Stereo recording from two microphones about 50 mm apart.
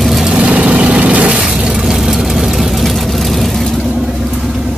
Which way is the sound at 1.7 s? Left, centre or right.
Centre.